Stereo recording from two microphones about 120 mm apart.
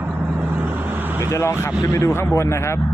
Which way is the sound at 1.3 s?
25° left (ahead or behind).